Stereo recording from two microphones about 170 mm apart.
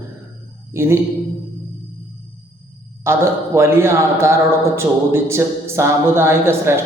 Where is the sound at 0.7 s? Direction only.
15° right (ahead or behind).